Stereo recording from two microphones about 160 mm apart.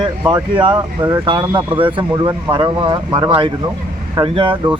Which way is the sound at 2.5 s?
30° right (ahead or behind).